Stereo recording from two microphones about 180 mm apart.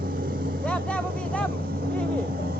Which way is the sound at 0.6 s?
5° left (ahead or behind).